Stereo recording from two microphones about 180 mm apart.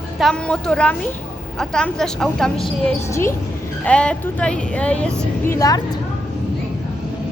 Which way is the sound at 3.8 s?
5° left (ahead or behind).